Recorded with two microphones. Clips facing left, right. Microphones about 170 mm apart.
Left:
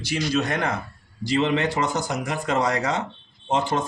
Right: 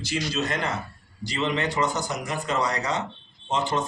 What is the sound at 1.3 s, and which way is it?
A man's voice, 55° left (ahead or behind).